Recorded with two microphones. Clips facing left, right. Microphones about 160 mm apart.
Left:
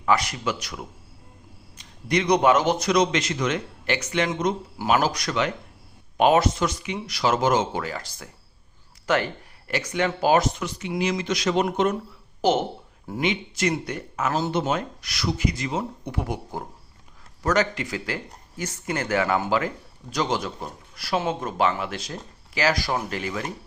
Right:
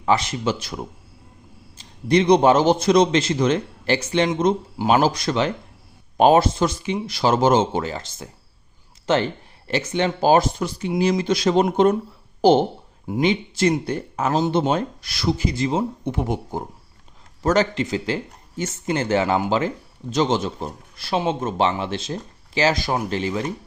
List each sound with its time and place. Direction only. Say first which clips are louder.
0.0 s speech: right 3 dB; 25° right (ahead or behind)